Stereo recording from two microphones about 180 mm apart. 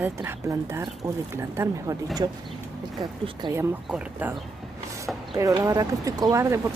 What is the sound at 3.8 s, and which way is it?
Speech, 5° right (ahead or behind).